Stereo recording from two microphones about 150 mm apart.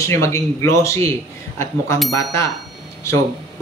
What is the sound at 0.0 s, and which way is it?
A woman's voice, 20° left (ahead or behind).